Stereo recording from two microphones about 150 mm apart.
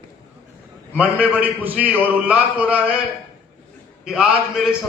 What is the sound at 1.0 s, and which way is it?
A man's voice, 10° right (ahead or behind).